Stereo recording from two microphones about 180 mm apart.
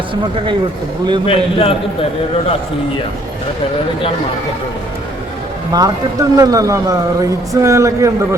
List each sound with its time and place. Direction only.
1.3 s a man's voice: 30° left (ahead or behind)
5.7 s a man's voice: 20° right (ahead or behind)